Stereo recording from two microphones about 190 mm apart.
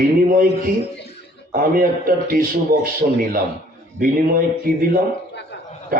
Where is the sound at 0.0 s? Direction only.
50° right (ahead or behind).